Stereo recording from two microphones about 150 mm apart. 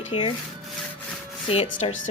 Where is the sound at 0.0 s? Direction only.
35° left (ahead or behind).